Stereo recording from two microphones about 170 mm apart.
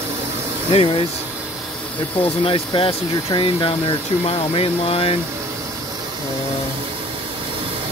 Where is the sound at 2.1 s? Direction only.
35° left (ahead or behind).